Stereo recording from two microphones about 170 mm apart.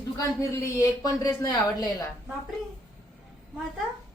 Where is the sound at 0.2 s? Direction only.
20° left (ahead or behind).